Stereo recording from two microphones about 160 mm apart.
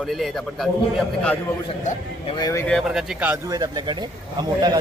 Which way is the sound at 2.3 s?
25° left (ahead or behind).